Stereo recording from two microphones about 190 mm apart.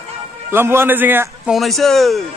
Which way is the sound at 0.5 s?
15° right (ahead or behind).